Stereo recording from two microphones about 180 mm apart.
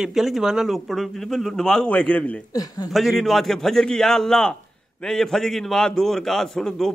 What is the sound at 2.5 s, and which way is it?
Speech, 20° left (ahead or behind).